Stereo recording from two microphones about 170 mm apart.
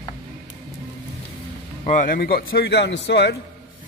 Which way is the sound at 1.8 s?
50° left (ahead or behind).